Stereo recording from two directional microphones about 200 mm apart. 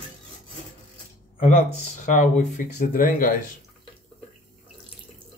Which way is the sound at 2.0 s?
40° left (ahead or behind).